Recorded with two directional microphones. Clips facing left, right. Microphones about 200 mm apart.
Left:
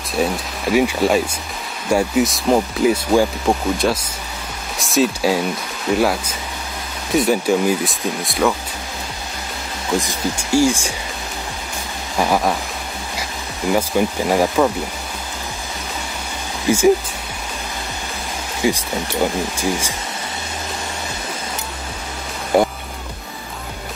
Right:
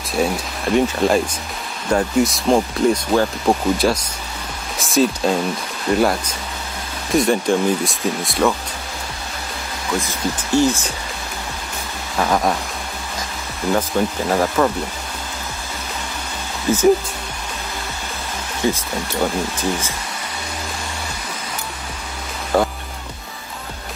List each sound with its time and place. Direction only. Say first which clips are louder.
0.1 s speech: even; 5° left (ahead or behind)
9.9 s speech: left 2 dB; 15° left (ahead or behind)
12.2 s speech: left 1 dB; 5° left (ahead or behind)
13.7 s speech: left 1 dB; 10° left (ahead or behind)
16.6 s speech: left 1 dB; 10° left (ahead or behind)
18.6 s speech: left 1 dB; 10° left (ahead or behind)
22.5 s music: left 2 dB; 15° left (ahead or behind)